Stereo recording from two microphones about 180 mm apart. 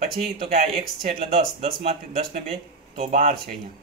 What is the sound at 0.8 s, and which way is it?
Speech, 35° right (ahead or behind).